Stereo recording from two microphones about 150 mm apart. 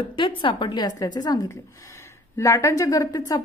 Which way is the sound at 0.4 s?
30° left (ahead or behind).